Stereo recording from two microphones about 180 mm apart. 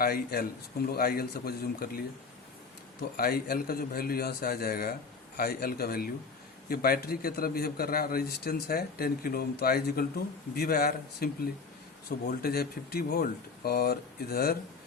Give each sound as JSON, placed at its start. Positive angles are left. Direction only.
{"t": 0.0, "sound": "a man's voice", "side_deg": 60}
{"t": 3.2, "sound": "a man's voice", "side_deg": 60}